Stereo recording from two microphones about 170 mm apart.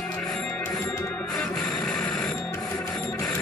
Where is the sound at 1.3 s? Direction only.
Centre (ahead or behind).